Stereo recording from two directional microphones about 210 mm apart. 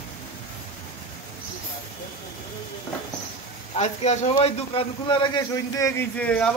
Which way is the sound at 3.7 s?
30° left (ahead or behind).